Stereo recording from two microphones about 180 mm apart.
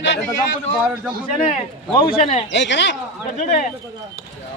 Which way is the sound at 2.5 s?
80° left.